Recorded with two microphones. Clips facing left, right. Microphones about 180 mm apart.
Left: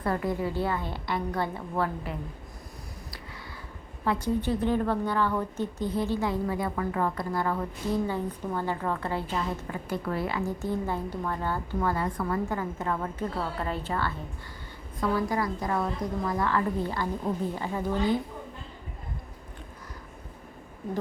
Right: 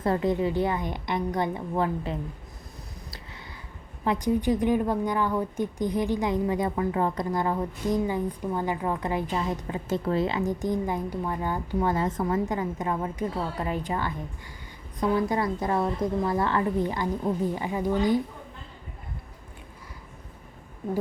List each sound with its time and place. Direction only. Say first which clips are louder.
0.0 s a woman's voice: right 4 dB; 20° right (ahead or behind)
4.0 s a woman's voice: right 3 dB; 15° right (ahead or behind)